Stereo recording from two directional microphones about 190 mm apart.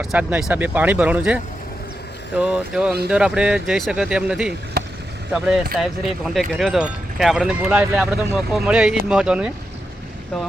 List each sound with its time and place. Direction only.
0.0 s speech: 5° right (ahead or behind)
2.4 s speech: 5° right (ahead or behind)